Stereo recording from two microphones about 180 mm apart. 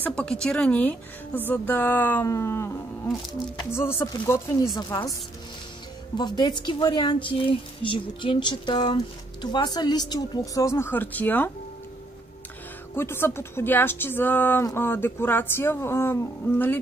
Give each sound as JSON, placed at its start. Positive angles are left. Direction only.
{"t": 0.0, "sound": "speech", "side_deg": 5}
{"t": 3.7, "sound": "speech", "side_deg": 15}
{"t": 6.1, "sound": "speech", "side_deg": 25}
{"t": 12.9, "sound": "speech", "side_deg": 10}